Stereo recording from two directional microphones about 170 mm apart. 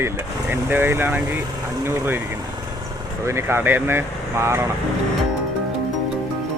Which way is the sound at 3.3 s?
15° right (ahead or behind).